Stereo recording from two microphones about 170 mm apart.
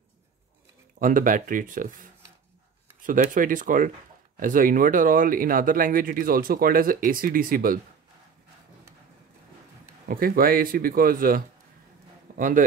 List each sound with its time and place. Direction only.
0.9 s speech: 55° right (ahead or behind)
10.0 s speech: 60° right (ahead or behind)